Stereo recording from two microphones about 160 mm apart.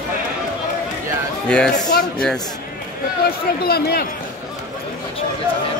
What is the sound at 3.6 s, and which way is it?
Speech, 75° left (ahead or behind).